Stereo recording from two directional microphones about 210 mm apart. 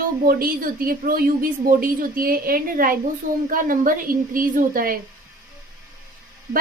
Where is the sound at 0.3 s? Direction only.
45° right (ahead or behind).